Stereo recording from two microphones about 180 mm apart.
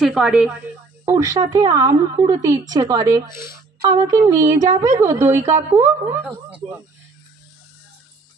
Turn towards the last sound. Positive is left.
turn(degrees=-10)  # may be behind; listen again after turning